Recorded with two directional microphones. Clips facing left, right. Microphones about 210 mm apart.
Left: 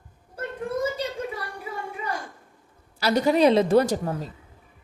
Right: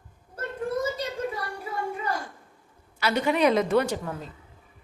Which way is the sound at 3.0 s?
35° left (ahead or behind).